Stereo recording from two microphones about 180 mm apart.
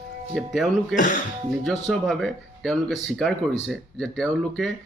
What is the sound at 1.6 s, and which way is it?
Speech, centre (ahead or behind).